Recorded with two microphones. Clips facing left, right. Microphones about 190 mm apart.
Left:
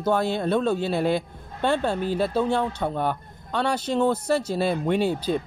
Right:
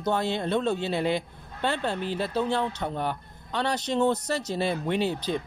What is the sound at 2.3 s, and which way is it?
Speech, 10° left (ahead or behind).